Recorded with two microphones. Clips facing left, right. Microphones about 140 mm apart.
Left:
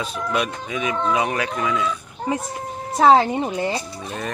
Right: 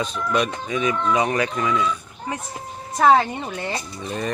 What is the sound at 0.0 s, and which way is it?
Speech, 10° left (ahead or behind).